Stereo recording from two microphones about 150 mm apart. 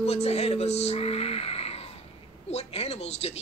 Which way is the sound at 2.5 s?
45° left (ahead or behind).